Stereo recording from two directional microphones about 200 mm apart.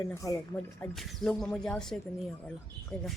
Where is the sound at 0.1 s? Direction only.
15° left (ahead or behind).